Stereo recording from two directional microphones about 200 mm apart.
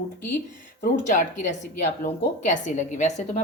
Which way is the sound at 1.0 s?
40° left (ahead or behind).